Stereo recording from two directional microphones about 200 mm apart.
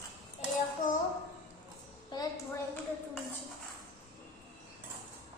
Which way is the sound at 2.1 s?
20° left (ahead or behind).